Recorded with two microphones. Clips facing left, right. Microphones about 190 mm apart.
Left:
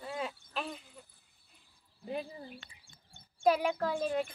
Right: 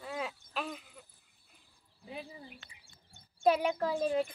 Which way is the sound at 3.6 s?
5° right (ahead or behind).